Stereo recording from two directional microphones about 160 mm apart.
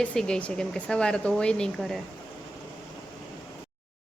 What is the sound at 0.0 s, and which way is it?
A woman's voice, 5° left (ahead or behind).